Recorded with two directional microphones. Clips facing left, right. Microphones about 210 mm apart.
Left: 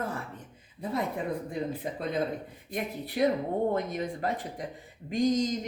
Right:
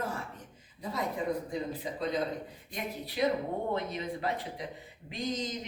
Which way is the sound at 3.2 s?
50° left (ahead or behind).